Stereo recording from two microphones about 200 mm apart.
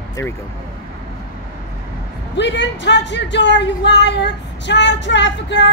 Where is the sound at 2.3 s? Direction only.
65° left (ahead or behind).